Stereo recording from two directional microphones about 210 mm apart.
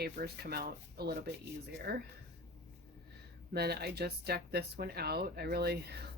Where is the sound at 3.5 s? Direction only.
50° right (ahead or behind).